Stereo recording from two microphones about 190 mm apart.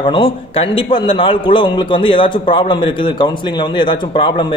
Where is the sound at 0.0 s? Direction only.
25° left (ahead or behind).